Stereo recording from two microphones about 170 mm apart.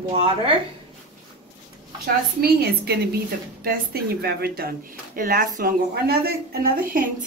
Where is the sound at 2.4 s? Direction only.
70° right (ahead or behind).